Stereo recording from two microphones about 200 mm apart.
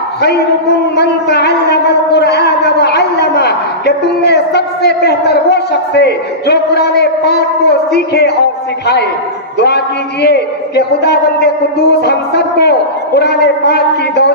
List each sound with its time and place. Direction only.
0.9 s a sound: 55° left (ahead or behind)
7.9 s a man's voice: 55° left (ahead or behind)
10.2 s a man's voice: 55° left (ahead or behind)